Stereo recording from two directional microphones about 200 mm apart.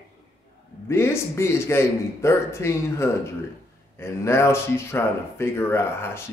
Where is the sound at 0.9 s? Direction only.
15° left (ahead or behind).